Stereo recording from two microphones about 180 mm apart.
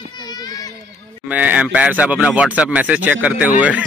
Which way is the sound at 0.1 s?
20° left (ahead or behind).